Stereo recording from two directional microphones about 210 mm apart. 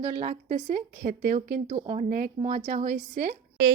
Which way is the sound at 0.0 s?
30° right (ahead or behind).